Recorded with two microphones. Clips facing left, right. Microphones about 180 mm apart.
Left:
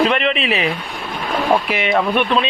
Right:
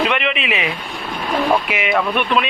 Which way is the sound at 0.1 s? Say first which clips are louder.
Left 3 dB; 35° left (ahead or behind).